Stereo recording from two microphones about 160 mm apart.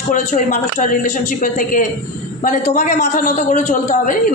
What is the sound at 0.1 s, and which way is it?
A man's voice, 50° left (ahead or behind).